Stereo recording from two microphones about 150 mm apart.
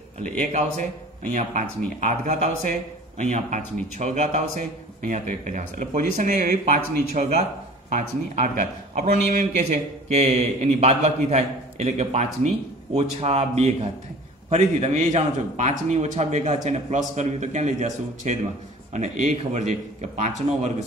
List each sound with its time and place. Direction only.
0.4 s speech: 50° right (ahead or behind)